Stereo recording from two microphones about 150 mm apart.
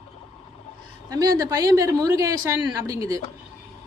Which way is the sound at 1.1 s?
25° right (ahead or behind).